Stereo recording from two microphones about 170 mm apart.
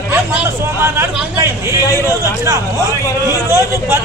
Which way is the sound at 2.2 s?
20° right (ahead or behind).